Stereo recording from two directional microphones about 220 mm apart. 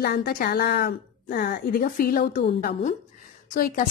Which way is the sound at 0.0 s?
40° left (ahead or behind).